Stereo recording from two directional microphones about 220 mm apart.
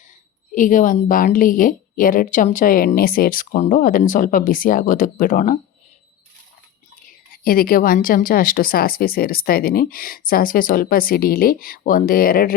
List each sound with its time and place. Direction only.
0.5 s a woman's voice: 35° left (ahead or behind)
7.1 s a woman's voice: 40° left (ahead or behind)